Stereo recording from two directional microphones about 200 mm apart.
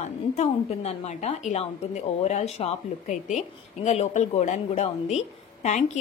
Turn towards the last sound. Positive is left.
turn(degrees=35)  # may be behind; listen again after turning